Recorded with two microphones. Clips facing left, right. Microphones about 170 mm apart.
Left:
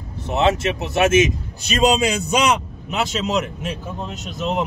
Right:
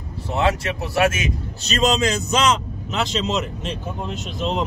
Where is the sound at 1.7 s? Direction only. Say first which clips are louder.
Left 2 dB; 10° left (ahead or behind).